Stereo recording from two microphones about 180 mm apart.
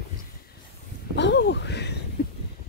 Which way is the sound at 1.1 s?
75° left (ahead or behind).